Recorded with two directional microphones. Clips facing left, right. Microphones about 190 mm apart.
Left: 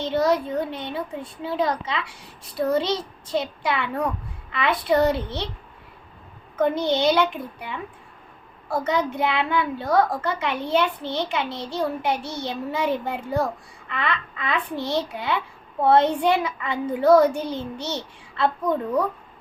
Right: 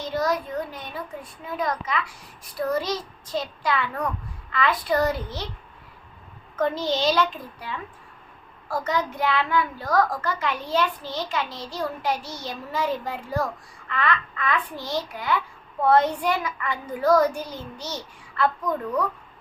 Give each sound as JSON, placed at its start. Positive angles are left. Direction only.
{"t": 0.0, "sound": "a sound", "side_deg": 25}
{"t": 0.4, "sound": "a child's voice", "side_deg": 25}
{"t": 6.7, "sound": "a woman's voice", "side_deg": 60}
{"t": 7.1, "sound": "a child's voice", "side_deg": 20}
{"t": 12.2, "sound": "a woman's voice", "side_deg": 60}
{"t": 12.5, "sound": "a child's voice", "side_deg": 20}